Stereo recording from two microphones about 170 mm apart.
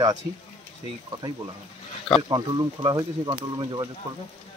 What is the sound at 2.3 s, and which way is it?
Speech, 25° right (ahead or behind).